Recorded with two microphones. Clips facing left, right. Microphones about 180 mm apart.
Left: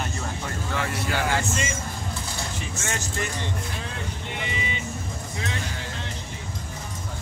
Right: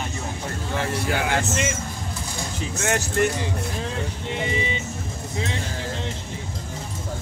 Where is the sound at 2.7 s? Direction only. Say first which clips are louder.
Right 10 dB; 65° right (ahead or behind).